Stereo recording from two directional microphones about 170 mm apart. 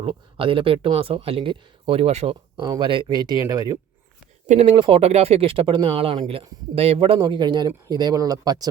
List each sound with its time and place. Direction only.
0.0 s speech: 30° right (ahead or behind)
4.4 s speech: 35° right (ahead or behind)